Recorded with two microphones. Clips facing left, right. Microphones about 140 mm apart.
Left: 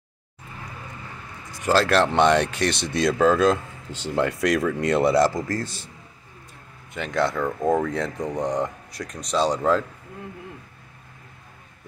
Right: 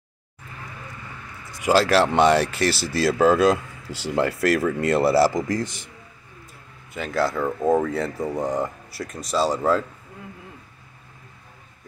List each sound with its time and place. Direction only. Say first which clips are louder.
1.6 s a man's voice: right 1 dB; 10° right (ahead or behind)
5.3 s a man's voice: right 3 dB; 15° right (ahead or behind)
6.9 s speech: even; 5° right (ahead or behind)